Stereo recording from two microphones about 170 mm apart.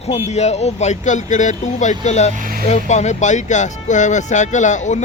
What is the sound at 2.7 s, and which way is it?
Speech, 40° left (ahead or behind).